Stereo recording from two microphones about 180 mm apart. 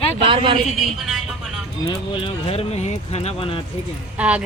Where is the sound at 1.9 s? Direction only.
30° left (ahead or behind).